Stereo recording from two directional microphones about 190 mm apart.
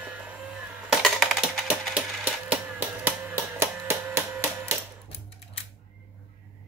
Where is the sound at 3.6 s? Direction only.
15° right (ahead or behind).